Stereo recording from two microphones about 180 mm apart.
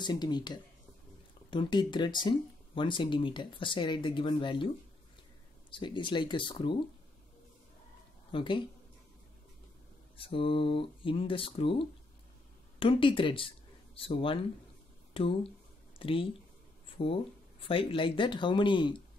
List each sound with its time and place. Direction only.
0.0 s speech: 25° left (ahead or behind)
5.7 s speech: 25° left (ahead or behind)
8.3 s speech: 30° left (ahead or behind)
10.1 s speech: 30° left (ahead or behind)